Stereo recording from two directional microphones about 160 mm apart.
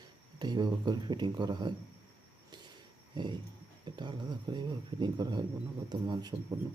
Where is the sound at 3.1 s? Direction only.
30° right (ahead or behind).